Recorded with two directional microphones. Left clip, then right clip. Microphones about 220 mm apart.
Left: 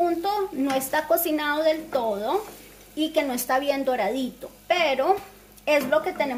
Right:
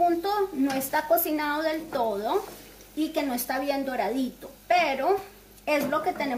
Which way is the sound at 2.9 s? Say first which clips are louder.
Left 4 dB; 35° left (ahead or behind).